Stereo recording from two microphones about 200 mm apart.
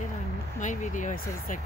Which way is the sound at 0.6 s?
40° left (ahead or behind).